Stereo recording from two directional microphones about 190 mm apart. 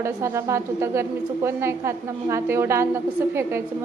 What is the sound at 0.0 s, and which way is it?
A woman's voice, 15° right (ahead or behind).